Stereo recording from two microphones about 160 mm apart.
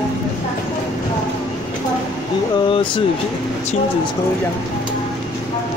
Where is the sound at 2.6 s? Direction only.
30° left (ahead or behind).